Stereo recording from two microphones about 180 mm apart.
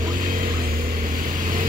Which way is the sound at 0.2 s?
50° right (ahead or behind).